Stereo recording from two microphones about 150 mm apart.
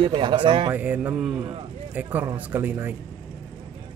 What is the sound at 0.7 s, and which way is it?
Speech, 10° right (ahead or behind).